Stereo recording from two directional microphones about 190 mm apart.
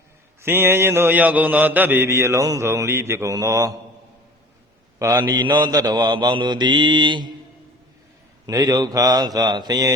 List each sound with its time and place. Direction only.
0.4 s mantra: 10° right (ahead or behind)
4.9 s mantra: 15° right (ahead or behind)
8.4 s mantra: 20° right (ahead or behind)